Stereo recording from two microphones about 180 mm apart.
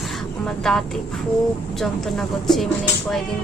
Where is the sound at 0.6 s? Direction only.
Centre (ahead or behind).